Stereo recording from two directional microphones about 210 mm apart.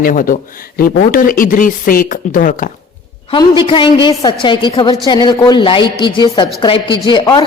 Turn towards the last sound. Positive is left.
turn(degrees=20)  # may be behind; listen again after turning